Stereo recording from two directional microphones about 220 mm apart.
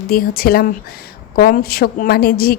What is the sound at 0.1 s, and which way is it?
A woman's voice, 40° left (ahead or behind).